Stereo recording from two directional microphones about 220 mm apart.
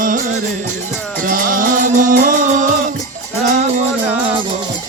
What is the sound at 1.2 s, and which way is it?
Music, 40° right (ahead or behind).